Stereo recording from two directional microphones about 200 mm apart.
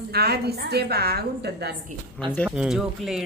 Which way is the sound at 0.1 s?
50° right (ahead or behind).